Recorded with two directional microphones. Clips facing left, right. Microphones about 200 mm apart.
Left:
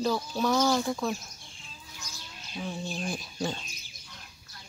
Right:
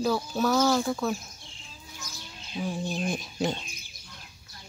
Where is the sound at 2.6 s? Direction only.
15° right (ahead or behind).